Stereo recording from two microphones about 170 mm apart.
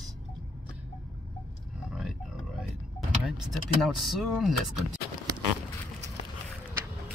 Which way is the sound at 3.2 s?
5° right (ahead or behind).